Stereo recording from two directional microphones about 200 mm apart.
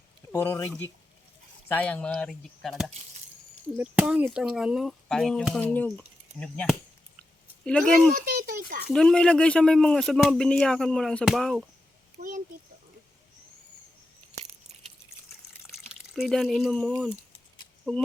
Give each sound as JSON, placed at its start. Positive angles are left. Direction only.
{"t": 0.3, "sound": "speech", "side_deg": 10}
{"t": 7.2, "sound": "a sound", "side_deg": 5}
{"t": 8.1, "sound": "a child's voice", "side_deg": -45}
{"t": 8.9, "sound": "speech", "side_deg": 5}
{"t": 15.9, "sound": "speech", "side_deg": 0}